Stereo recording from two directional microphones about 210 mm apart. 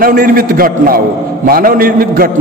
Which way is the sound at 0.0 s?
45° right (ahead or behind).